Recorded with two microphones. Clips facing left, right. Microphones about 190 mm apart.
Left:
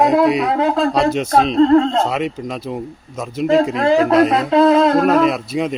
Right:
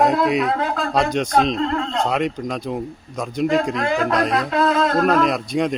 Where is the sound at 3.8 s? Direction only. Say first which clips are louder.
Left 7 dB; 35° left (ahead or behind).